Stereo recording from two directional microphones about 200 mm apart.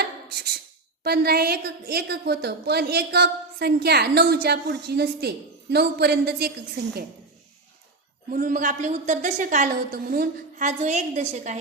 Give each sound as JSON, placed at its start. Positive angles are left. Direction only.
{"t": 1.0, "sound": "a woman's voice", "side_deg": -50}
{"t": 8.3, "sound": "a woman's voice", "side_deg": -45}